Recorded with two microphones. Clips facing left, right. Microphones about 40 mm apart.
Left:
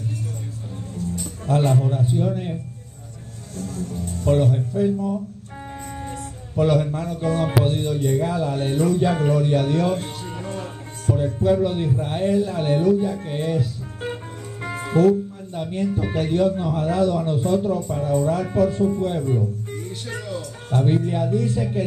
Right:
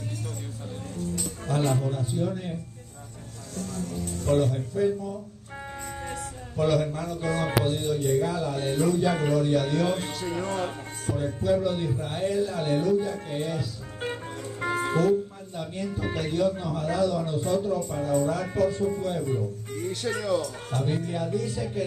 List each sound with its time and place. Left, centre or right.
1.1 s speech: left
3.5 s speech: left
6.5 s speech: left
10.4 s music: right
11.1 s music: centre
11.4 s speech: left
14.6 s music: centre
15.0 s speech: left
17.6 s speech: left
18.2 s speech: left
20.7 s speech: left